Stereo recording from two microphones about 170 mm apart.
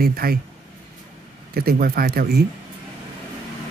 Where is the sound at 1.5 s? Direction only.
60° right (ahead or behind).